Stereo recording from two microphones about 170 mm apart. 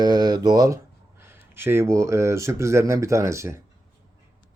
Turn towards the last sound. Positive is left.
turn(degrees=-15)  # may be behind; listen again after turning